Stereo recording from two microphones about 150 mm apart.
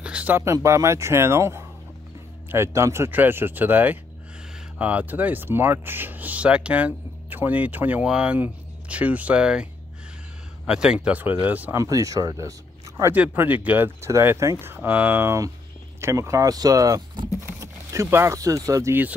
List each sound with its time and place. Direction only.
0.0 s speech: 10° right (ahead or behind)
10.7 s speech: 5° right (ahead or behind)
11.8 s speech: 20° right (ahead or behind)
13.1 s speech: 10° right (ahead or behind)